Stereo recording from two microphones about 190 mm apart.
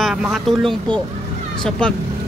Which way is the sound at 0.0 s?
Centre (ahead or behind).